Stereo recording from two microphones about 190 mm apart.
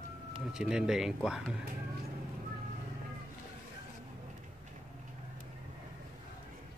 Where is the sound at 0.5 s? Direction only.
5° right (ahead or behind).